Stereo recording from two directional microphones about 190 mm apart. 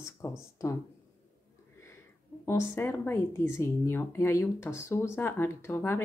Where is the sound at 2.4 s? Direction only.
15° left (ahead or behind).